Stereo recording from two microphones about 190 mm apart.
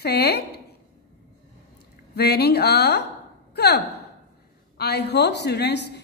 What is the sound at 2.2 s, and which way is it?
A woman's voice, 60° left (ahead or behind).